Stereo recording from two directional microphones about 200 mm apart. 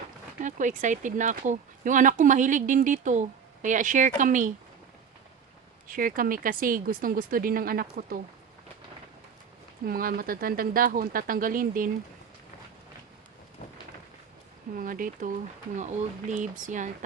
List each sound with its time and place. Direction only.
0.4 s speech: 40° right (ahead or behind)
5.9 s speech: 45° right (ahead or behind)
9.8 s speech: 45° right (ahead or behind)
14.8 s speech: 45° right (ahead or behind)
16.3 s speech: 40° right (ahead or behind)